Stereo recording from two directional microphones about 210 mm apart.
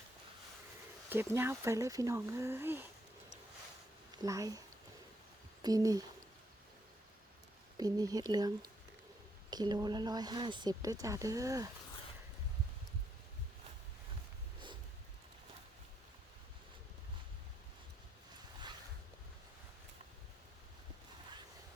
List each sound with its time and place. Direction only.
1.1 s speech: 10° right (ahead or behind)
4.1 s speech: 15° right (ahead or behind)
5.6 s speech: 15° right (ahead or behind)
7.8 s speech: 20° right (ahead or behind)